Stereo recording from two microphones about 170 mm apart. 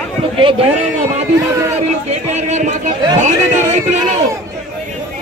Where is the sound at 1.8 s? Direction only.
40° right (ahead or behind).